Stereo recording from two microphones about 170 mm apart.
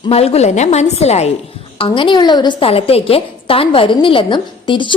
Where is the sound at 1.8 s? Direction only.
30° left (ahead or behind).